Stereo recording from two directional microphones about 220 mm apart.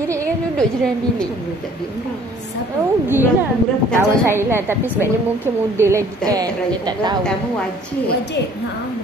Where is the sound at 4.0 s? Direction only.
10° right (ahead or behind).